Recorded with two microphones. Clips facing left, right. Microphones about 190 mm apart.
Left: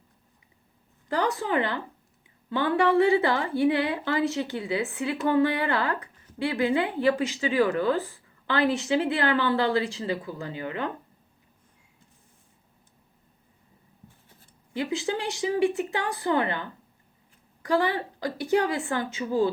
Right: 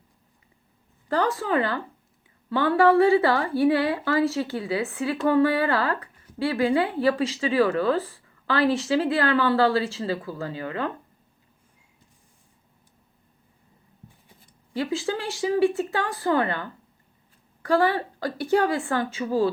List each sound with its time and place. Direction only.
1.0 s a woman's voice: 15° left (ahead or behind)
14.7 s a woman's voice: 20° left (ahead or behind)